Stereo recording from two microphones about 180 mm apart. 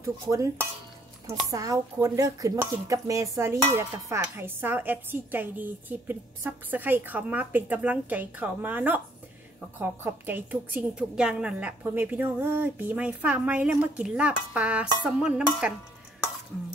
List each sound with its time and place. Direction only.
0.0 s speech: 15° right (ahead or behind)
15.0 s dishes: 5° right (ahead or behind)